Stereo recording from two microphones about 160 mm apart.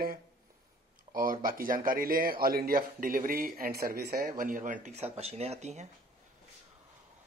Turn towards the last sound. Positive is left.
turn(degrees=-45)  # may be behind; listen again after turning